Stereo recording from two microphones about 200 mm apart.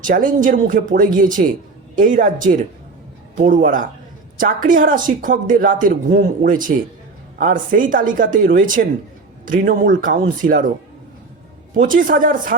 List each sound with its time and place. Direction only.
0.1 s speech: 40° right (ahead or behind)
11.8 s speech: 40° right (ahead or behind)